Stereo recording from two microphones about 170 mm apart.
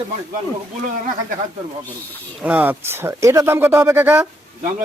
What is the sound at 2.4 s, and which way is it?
Speech, 10° right (ahead or behind).